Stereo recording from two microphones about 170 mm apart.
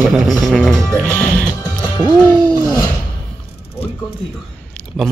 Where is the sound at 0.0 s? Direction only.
Centre (ahead or behind).